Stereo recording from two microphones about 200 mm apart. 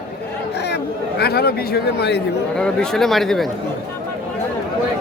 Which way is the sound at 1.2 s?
50° left (ahead or behind).